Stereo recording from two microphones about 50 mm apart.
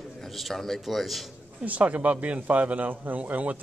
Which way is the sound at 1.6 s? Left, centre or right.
Right.